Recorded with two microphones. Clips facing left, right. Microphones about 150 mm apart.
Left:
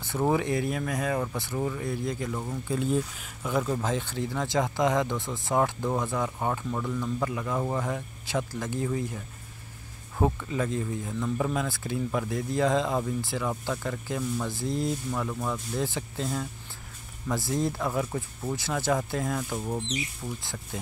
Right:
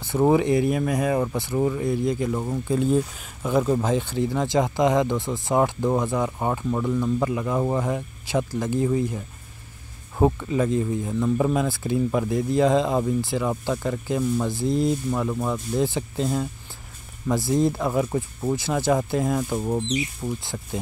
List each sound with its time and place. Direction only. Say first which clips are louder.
0.3 s speech: right 7 dB; 15° right (ahead or behind)
2.4 s speech: right 6 dB; 40° right (ahead or behind)
3.5 s speech: right 7 dB; 25° right (ahead or behind)
19.5 s speech: right 7 dB; 30° right (ahead or behind)